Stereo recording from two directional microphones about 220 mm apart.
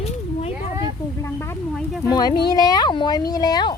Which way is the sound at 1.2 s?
10° left (ahead or behind).